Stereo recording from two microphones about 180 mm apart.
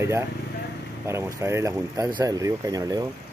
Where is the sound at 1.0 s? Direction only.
15° right (ahead or behind).